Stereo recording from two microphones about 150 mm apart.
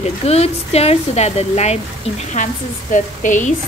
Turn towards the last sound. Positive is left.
turn(degrees=55)  # may be behind; listen again after turning